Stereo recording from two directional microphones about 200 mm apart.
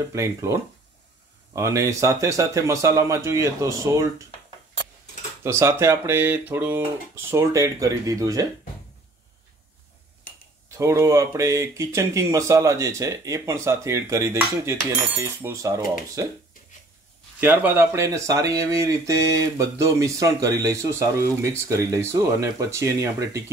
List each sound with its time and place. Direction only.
0.1 s speech: 15° right (ahead or behind)
5.4 s speech: 15° right (ahead or behind)
10.8 s speech: 15° right (ahead or behind)
17.4 s speech: 10° right (ahead or behind)